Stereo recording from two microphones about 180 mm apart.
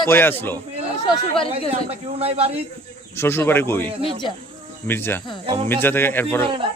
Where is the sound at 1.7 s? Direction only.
35° right (ahead or behind).